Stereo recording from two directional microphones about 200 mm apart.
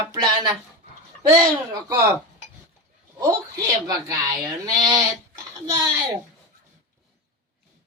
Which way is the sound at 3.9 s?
15° right (ahead or behind).